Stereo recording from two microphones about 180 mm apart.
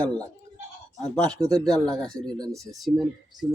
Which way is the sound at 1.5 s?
5° left (ahead or behind).